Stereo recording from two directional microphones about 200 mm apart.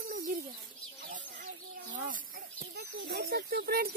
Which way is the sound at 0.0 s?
50° right (ahead or behind).